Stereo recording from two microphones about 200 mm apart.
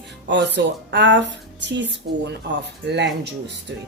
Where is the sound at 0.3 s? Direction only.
60° right (ahead or behind).